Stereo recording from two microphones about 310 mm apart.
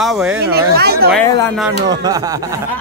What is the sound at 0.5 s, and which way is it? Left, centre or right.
Speech, right.